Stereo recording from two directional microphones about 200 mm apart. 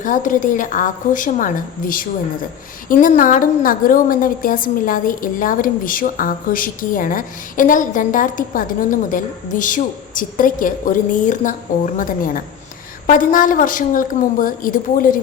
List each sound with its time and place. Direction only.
0.0 s a woman's voice: 40° left (ahead or behind)